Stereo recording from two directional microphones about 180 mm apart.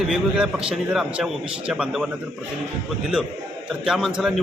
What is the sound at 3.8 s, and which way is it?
Speech, centre (ahead or behind).